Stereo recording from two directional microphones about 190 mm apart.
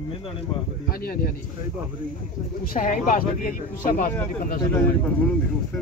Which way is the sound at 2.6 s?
45° left (ahead or behind).